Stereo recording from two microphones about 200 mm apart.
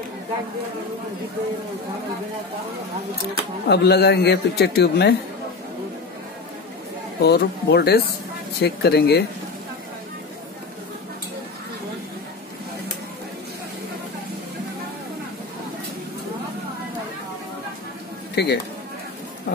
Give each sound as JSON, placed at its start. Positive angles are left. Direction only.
{"t": 3.6, "sound": "a man's voice", "side_deg": 55}
{"t": 7.2, "sound": "a man's voice", "side_deg": 55}
{"t": 18.3, "sound": "speech", "side_deg": 55}